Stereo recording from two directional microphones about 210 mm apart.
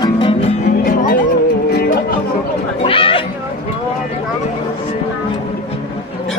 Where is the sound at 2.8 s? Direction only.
25° left (ahead or behind).